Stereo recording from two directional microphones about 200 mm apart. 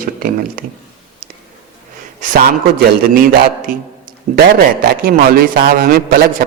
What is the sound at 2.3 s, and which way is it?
A man's voice, 45° right (ahead or behind).